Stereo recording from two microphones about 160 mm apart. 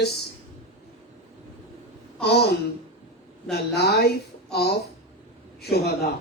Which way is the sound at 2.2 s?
90° left.